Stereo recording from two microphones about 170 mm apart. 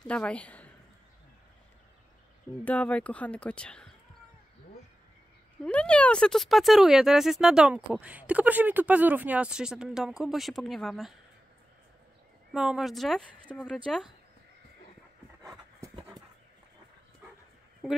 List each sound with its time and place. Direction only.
0.1 s a woman's voice: 5° left (ahead or behind)
2.6 s speech: 10° left (ahead or behind)
5.6 s speech: 5° left (ahead or behind)
12.5 s speech: 5° right (ahead or behind)
16.0 s a sound: 25° right (ahead or behind)